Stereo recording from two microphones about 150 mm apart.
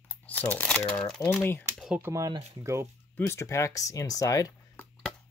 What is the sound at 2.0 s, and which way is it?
Speech, 20° right (ahead or behind).